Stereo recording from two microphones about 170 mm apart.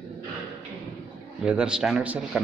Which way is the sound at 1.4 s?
5° right (ahead or behind).